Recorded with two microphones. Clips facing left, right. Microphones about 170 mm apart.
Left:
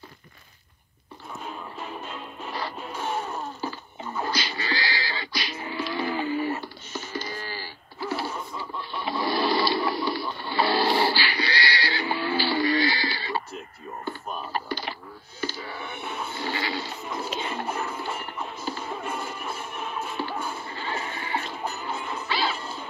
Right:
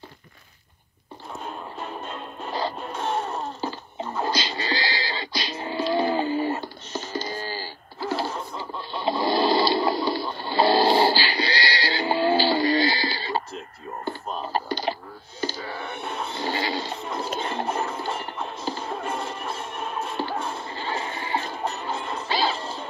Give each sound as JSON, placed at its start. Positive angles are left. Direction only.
{"t": 2.9, "sound": "wail", "side_deg": -25}
{"t": 10.4, "sound": "music", "side_deg": -30}
{"t": 14.0, "sound": "typing", "side_deg": -30}
{"t": 16.0, "sound": "music", "side_deg": 5}
{"t": 16.4, "sound": "a sound", "side_deg": -40}
{"t": 17.6, "sound": "music", "side_deg": -30}
{"t": 19.3, "sound": "music", "side_deg": 5}
{"t": 20.2, "sound": "music", "side_deg": -30}